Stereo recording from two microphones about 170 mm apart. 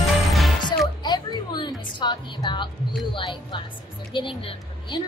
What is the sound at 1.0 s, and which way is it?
Music, 25° left (ahead or behind).